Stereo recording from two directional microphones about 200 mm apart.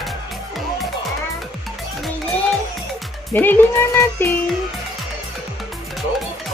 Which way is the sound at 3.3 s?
10° left (ahead or behind).